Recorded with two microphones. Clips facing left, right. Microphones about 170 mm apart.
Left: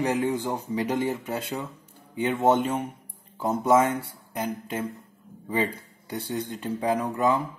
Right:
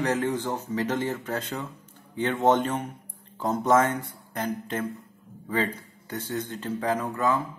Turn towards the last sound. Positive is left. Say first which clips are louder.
# left 2 dB
turn(degrees=15)  # may be behind; listen again after turning